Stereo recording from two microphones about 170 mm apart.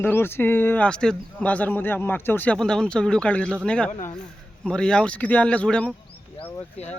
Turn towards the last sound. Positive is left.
turn(degrees=40)  # may be behind; listen again after turning